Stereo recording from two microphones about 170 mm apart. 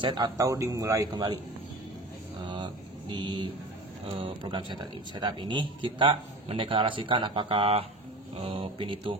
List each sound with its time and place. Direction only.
0.0 s speech: 25° right (ahead or behind)
2.4 s a sound: 25° right (ahead or behind)
4.0 s speech: 30° right (ahead or behind)